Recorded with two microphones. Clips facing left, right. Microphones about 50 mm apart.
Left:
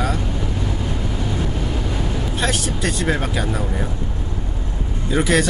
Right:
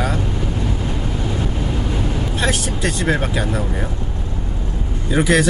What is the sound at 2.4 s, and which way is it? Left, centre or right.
Speech, centre.